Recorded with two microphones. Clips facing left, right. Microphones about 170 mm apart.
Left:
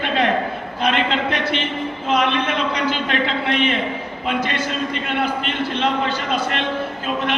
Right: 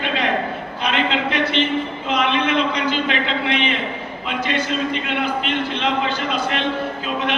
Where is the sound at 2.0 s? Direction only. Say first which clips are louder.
Left 1 dB; 45° left (ahead or behind).